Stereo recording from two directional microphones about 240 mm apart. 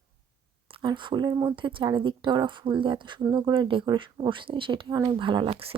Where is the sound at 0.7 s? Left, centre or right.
Centre.